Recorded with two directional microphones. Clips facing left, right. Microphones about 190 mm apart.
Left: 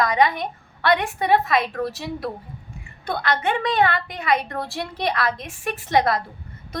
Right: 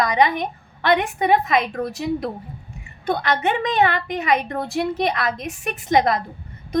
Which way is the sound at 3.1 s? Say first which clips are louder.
Right 2 dB; 20° right (ahead or behind).